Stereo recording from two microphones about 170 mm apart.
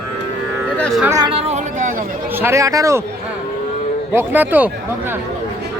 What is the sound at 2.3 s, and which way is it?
Speech, 15° right (ahead or behind).